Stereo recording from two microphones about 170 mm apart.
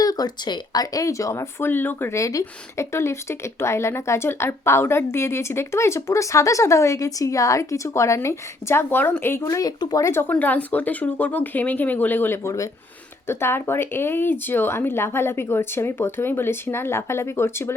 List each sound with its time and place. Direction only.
0.0 s speech: 20° left (ahead or behind)